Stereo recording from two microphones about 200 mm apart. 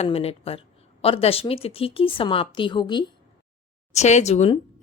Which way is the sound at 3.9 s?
35° left (ahead or behind).